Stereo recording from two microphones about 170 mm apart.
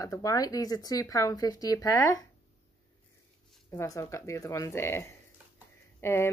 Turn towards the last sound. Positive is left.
turn(degrees=15)  # may be behind; listen again after turning